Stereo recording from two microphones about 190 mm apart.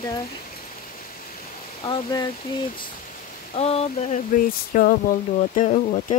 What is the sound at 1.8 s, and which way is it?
Speech, 20° left (ahead or behind).